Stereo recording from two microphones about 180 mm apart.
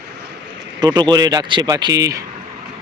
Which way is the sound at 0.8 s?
25° right (ahead or behind).